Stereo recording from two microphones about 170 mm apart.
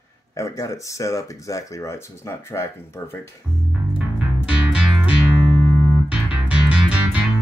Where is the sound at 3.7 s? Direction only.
5° right (ahead or behind).